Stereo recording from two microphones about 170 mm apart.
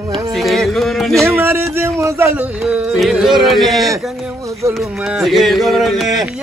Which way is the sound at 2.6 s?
5° right (ahead or behind).